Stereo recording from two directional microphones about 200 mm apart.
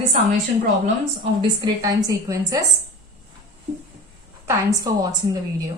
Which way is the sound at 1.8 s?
15° right (ahead or behind).